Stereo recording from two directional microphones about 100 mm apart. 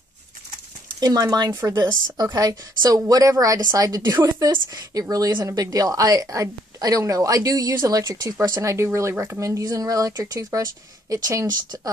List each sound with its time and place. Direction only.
0.9 s speech: 40° right (ahead or behind)
8.5 s speech: 25° right (ahead or behind)
9.4 s speech: 35° right (ahead or behind)